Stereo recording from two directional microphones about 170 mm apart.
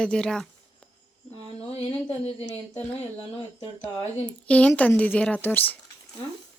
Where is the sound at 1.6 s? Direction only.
35° left (ahead or behind).